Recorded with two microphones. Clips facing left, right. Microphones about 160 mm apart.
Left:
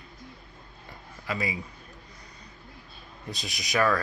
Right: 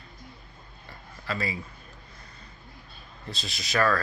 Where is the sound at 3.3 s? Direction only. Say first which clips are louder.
Even; 15° left (ahead or behind).